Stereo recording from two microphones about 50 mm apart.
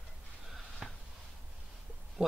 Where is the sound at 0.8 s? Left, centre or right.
Centre.